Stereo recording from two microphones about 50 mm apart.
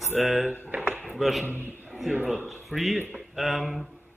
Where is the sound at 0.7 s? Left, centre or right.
Right.